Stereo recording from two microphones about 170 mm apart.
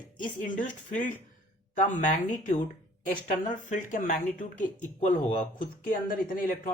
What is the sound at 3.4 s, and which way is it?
Speech, 50° left (ahead or behind).